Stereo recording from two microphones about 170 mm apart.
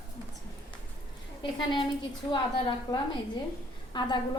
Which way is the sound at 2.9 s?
20° left (ahead or behind).